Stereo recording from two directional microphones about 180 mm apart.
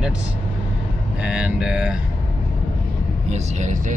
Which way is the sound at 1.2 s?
5° right (ahead or behind).